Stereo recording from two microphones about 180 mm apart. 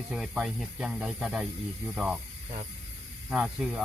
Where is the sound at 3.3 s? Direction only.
5° right (ahead or behind).